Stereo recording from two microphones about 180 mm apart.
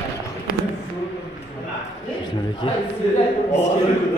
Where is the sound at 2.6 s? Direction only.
30° left (ahead or behind).